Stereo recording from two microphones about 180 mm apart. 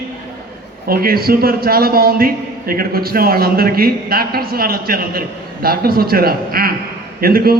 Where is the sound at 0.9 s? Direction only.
55° right (ahead or behind).